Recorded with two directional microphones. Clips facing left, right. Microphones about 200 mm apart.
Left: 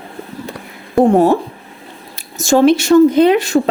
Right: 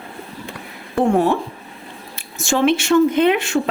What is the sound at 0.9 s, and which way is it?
Speech, 35° left (ahead or behind).